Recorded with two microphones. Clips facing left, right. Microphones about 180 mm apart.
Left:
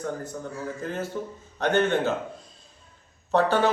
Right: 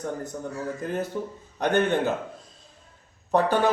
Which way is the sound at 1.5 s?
15° right (ahead or behind).